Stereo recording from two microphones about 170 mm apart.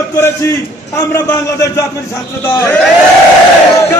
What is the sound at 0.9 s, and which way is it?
A man's voice, 15° left (ahead or behind).